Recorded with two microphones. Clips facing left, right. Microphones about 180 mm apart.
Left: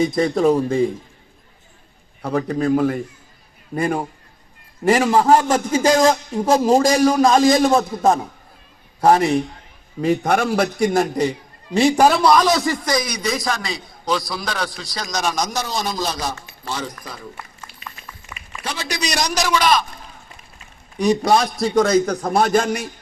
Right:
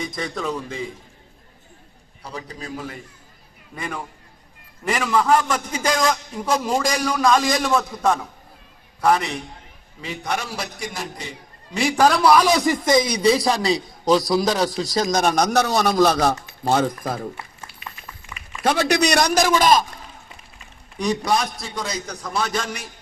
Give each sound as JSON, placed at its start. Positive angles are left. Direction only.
{"t": 0.0, "sound": "a man's voice", "side_deg": 35}
{"t": 2.2, "sound": "a man's voice", "side_deg": 55}
{"t": 7.7, "sound": "a man's voice", "side_deg": 40}
{"t": 11.7, "sound": "a man's voice", "side_deg": 25}
{"t": 11.9, "sound": "a man's voice", "side_deg": 10}
{"t": 12.2, "sound": "a man's voice", "side_deg": -10}
{"t": 16.3, "sound": "speech", "side_deg": -50}
{"t": 17.7, "sound": "a sound", "side_deg": 20}
{"t": 18.6, "sound": "a man's voice", "side_deg": -60}
{"t": 21.2, "sound": "a man's voice", "side_deg": 35}
{"t": 21.8, "sound": "a man's voice", "side_deg": 55}